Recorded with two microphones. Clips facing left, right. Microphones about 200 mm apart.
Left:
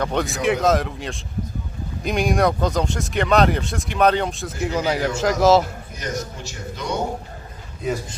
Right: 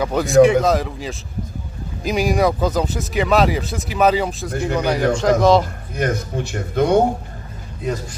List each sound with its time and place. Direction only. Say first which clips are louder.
0.0 s speech: right 9 dB; 5° right (ahead or behind)
6.0 s a man's voice: right 8 dB; 55° right (ahead or behind)
7.8 s speech: right 1 dB; centre (ahead or behind)